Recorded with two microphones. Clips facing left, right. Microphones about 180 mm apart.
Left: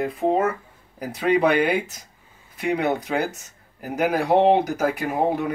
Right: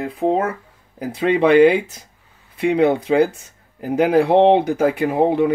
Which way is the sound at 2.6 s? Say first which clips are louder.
Right 7 dB; 30° right (ahead or behind).